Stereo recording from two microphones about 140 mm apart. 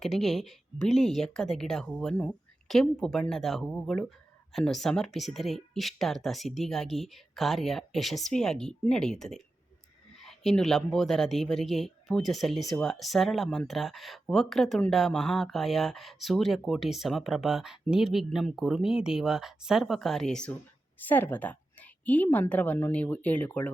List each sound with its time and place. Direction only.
0.0 s a woman's voice: centre (ahead or behind)